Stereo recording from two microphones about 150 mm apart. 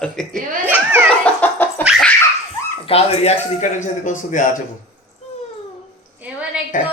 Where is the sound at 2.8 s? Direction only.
40° left (ahead or behind); by 4.5 s 60° left (ahead or behind).